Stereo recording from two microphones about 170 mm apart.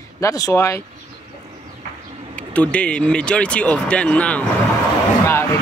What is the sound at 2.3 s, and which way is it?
Speech, 10° left (ahead or behind).